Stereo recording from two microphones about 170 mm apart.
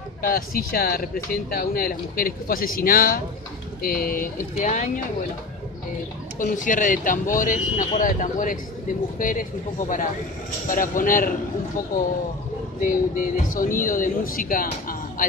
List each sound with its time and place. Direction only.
0.2 s speech: 60° left (ahead or behind); by 5.0 s 45° left (ahead or behind)
6.4 s speech: 50° left (ahead or behind)
12.8 s speech: 55° left (ahead or behind)